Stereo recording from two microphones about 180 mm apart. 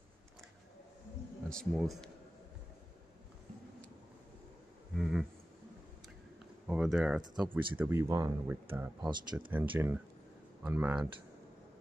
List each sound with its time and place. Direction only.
1.5 s speech: centre (ahead or behind)
4.9 s a sound: 5° right (ahead or behind)
6.7 s speech: 5° right (ahead or behind)
9.1 s speech: 25° right (ahead or behind)
9.5 s speech: 10° right (ahead or behind)